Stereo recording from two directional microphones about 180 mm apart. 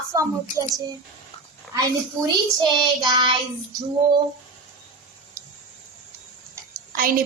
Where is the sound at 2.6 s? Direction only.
25° right (ahead or behind).